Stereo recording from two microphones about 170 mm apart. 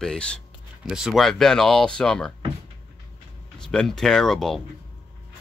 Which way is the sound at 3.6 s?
5° left (ahead or behind).